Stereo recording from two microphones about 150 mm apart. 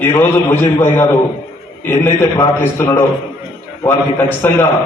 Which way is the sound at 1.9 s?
20° left (ahead or behind).